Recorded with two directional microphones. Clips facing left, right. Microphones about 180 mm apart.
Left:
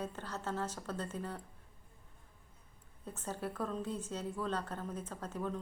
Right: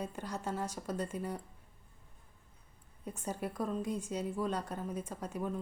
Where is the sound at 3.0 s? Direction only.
15° right (ahead or behind).